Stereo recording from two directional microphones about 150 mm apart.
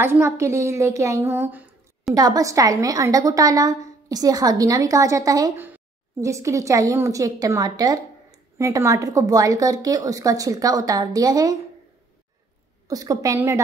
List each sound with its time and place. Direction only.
0.0 s a woman's voice: 15° right (ahead or behind)
2.1 s a woman's voice: 25° right (ahead or behind)
12.8 s a woman's voice: 25° right (ahead or behind)